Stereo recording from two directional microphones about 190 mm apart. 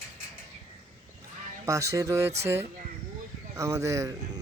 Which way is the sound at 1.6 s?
15° right (ahead or behind).